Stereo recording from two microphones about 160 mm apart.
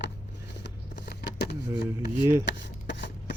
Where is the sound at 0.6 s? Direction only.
90° left.